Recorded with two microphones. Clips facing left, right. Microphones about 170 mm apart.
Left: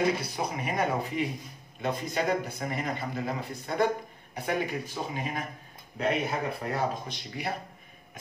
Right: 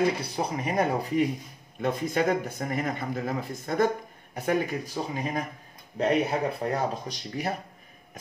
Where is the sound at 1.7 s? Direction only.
50° right (ahead or behind).